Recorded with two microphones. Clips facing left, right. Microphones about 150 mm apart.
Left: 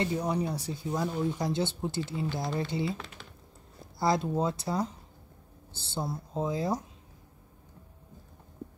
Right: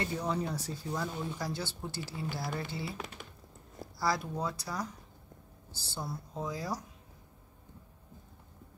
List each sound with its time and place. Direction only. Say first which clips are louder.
0.0 s speech: left 4 dB; 15° left (ahead or behind)
4.0 s speech: left 6 dB; 25° left (ahead or behind)